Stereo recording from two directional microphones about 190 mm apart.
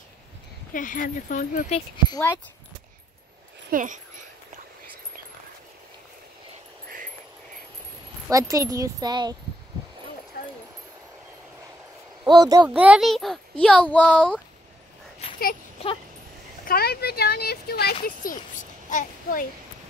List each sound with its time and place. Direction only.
0.7 s speech: 45° left (ahead or behind)
2.1 s speech: 10° left (ahead or behind)
3.7 s speech: 45° right (ahead or behind)
8.3 s speech: 15° right (ahead or behind)
12.3 s a child's voice: 20° right (ahead or behind); by 14.4 s 5° left (ahead or behind)
15.2 s a sound: 30° left (ahead or behind)
16.6 s a child's voice: 55° left (ahead or behind)